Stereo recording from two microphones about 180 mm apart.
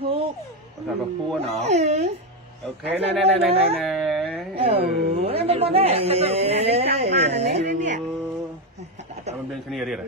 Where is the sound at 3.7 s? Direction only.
Centre (ahead or behind).